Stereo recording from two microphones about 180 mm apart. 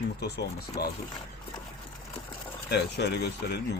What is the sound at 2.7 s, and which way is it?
Speech, 65° left (ahead or behind).